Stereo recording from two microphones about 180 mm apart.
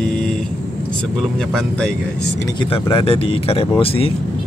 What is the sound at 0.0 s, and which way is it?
Vehicle, 5° left (ahead or behind).